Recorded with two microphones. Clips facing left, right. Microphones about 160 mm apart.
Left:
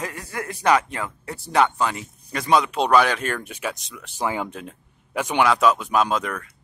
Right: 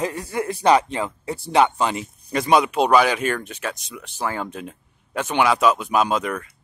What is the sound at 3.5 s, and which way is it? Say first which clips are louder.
Speech: even; 10° left (ahead or behind).